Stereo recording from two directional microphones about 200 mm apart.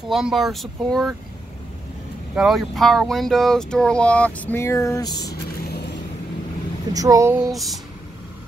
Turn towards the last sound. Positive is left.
turn(degrees=0)  # may be behind; listen again after turning